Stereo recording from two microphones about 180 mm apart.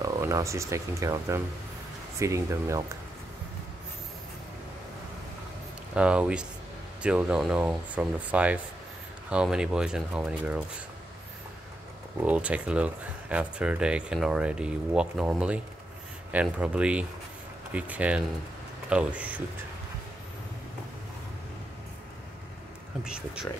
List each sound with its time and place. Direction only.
0.0 s speech: 20° right (ahead or behind)
5.9 s speech: 5° right (ahead or behind)
12.3 s speech: 5° right (ahead or behind)
23.0 s speech: 5° right (ahead or behind)